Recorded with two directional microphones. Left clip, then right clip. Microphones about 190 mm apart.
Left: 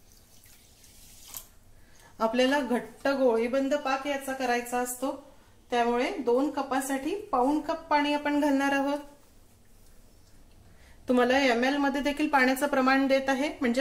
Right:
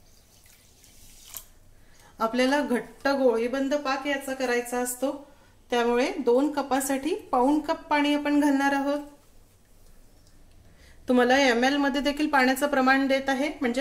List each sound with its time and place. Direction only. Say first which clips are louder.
2.1 s speech: right 1 dB; 5° right (ahead or behind)
4.4 s a woman's voice: even; 10° right (ahead or behind)
5.7 s a woman's voice: right 2 dB; 25° right (ahead or behind); by 9.0 s 5° right (ahead or behind)
11.1 s a woman's voice: right 3 dB; 15° right (ahead or behind); by 13.7 s centre (ahead or behind)